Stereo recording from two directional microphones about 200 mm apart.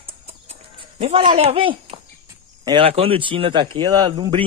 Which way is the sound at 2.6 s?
25° right (ahead or behind).